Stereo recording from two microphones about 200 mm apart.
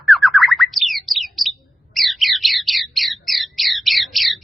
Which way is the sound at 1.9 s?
Centre (ahead or behind).